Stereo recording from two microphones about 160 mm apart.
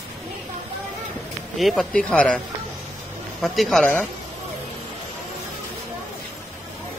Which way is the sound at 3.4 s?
Centre (ahead or behind).